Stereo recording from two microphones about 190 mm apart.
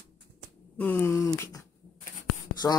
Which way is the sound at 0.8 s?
10° left (ahead or behind).